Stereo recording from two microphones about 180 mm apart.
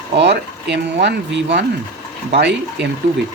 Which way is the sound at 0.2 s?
70° right (ahead or behind).